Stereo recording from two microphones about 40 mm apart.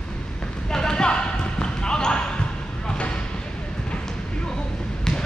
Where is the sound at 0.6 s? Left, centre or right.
Centre.